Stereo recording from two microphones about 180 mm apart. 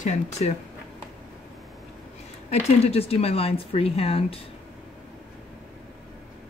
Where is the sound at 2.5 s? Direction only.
35° left (ahead or behind).